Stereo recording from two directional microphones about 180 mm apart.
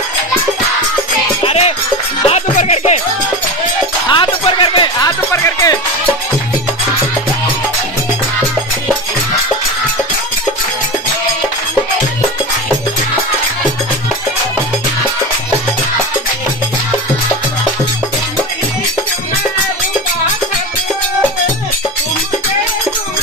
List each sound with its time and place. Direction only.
1.4 s music: 35° left (ahead or behind)
4.1 s music: 25° left (ahead or behind)